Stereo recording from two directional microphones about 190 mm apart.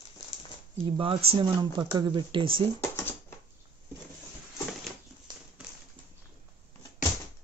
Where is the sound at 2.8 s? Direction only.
10° left (ahead or behind).